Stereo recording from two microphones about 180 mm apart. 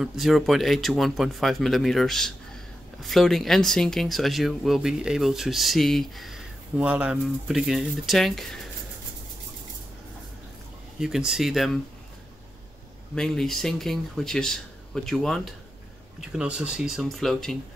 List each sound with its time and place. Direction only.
0.0 s speech: centre (ahead or behind)
11.0 s speech: 5° right (ahead or behind)
13.1 s speech: 5° left (ahead or behind)